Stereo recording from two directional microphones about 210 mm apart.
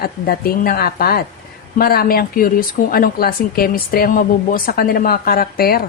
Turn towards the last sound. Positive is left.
turn(degrees=45)  # may be behind; listen again after turning